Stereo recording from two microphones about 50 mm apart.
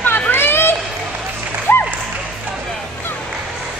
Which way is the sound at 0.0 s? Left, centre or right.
Left.